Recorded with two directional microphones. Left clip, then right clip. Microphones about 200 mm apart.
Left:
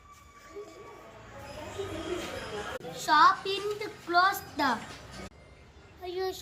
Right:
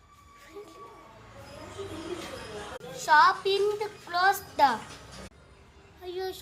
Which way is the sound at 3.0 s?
35° right (ahead or behind).